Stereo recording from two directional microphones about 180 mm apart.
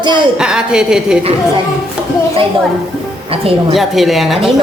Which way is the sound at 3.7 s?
Centre (ahead or behind).